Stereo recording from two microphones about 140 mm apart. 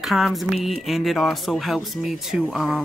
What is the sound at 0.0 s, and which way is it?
Speech, centre (ahead or behind).